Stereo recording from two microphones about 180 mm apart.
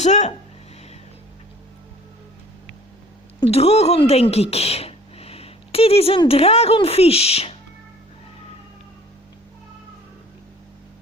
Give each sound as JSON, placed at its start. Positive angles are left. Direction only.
{"t": 0.0, "sound": "speech", "side_deg": 40}
{"t": 3.5, "sound": "speech", "side_deg": 35}